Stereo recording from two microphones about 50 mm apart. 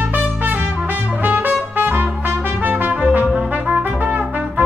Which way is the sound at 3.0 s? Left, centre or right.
Right.